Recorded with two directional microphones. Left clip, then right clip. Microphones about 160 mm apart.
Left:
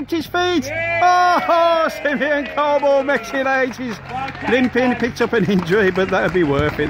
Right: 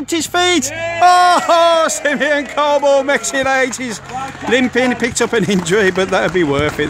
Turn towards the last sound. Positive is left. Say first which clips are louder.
# right 2 dB
turn(degrees=-10)  # may be behind; listen again after turning